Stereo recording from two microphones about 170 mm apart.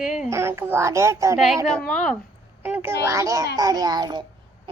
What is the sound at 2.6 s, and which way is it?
A woman's voice, 10° right (ahead or behind).